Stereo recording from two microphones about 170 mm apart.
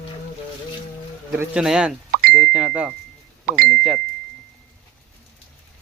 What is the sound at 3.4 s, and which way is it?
Speech, 60° right (ahead or behind).